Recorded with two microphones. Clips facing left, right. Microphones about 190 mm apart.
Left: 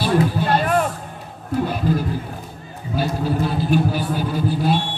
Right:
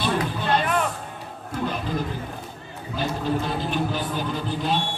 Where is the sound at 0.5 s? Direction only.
40° left (ahead or behind).